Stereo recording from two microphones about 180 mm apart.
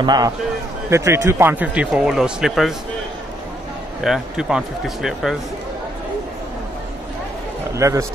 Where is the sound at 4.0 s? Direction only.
5° right (ahead or behind).